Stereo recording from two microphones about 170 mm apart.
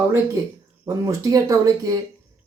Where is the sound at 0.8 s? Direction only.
20° right (ahead or behind).